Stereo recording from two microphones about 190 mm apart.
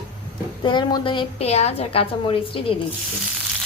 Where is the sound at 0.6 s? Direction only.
25° left (ahead or behind).